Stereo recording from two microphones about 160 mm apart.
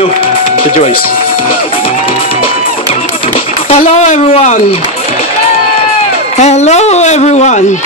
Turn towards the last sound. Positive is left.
turn(degrees=50)  # may be behind; listen again after turning